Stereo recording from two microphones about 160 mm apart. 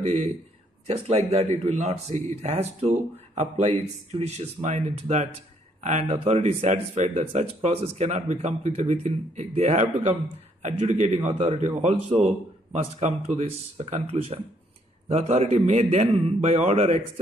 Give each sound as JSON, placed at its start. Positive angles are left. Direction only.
{"t": 0.0, "sound": "a man's voice", "side_deg": -45}